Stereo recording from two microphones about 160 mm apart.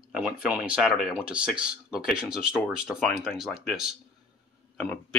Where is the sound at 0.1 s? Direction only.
5° right (ahead or behind).